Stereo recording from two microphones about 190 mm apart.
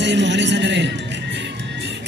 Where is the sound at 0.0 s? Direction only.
70° right (ahead or behind).